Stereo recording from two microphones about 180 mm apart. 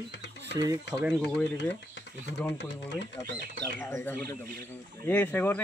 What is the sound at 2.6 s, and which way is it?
Speech, 75° left (ahead or behind).